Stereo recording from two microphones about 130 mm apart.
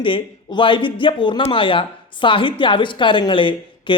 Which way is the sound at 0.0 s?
40° left (ahead or behind).